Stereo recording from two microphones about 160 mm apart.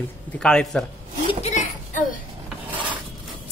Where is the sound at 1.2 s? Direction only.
45° left (ahead or behind).